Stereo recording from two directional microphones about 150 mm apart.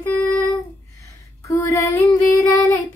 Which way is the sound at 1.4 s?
20° left (ahead or behind).